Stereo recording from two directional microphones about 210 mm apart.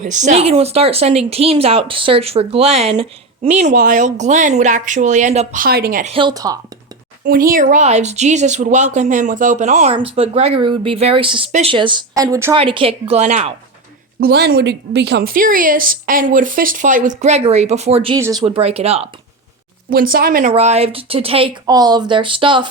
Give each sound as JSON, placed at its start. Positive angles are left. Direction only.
{"t": 0.0, "sound": "speech", "side_deg": -35}
{"t": 6.1, "sound": "speech", "side_deg": -20}
{"t": 7.3, "sound": "speech", "side_deg": -40}
{"t": 12.5, "sound": "speech", "side_deg": -25}
{"t": 14.2, "sound": "speech", "side_deg": -50}
{"t": 18.4, "sound": "speech", "side_deg": -30}
{"t": 19.9, "sound": "speech", "side_deg": -45}
{"t": 20.5, "sound": "speech", "side_deg": -30}